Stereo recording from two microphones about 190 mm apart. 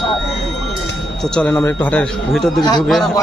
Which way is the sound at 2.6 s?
20° left (ahead or behind).